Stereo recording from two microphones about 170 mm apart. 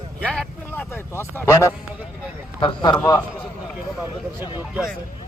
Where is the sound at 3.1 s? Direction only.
10° left (ahead or behind).